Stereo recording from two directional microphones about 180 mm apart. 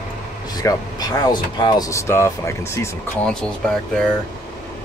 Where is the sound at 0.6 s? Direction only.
20° left (ahead or behind).